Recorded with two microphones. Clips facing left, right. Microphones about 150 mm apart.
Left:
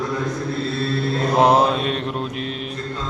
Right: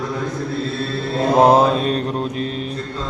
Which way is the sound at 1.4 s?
40° right (ahead or behind).